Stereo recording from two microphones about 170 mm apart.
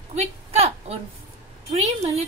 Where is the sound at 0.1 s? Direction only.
40° right (ahead or behind).